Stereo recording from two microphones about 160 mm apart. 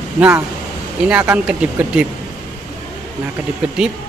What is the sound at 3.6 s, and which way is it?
Speech, 10° right (ahead or behind).